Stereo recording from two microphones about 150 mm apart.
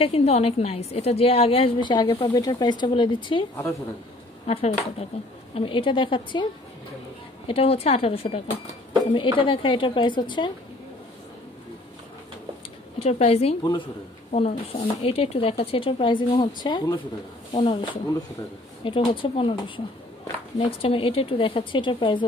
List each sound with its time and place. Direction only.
0.0 s speech: 40° left (ahead or behind)
4.5 s a woman's voice: 45° left (ahead or behind)
7.4 s speech: 40° left (ahead or behind)
13.0 s a woman's voice: 40° left (ahead or behind)
18.9 s speech: 35° left (ahead or behind)
20.5 s speech: 40° left (ahead or behind)